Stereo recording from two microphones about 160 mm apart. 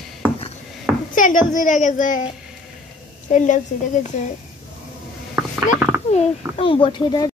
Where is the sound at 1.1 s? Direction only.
55° left (ahead or behind).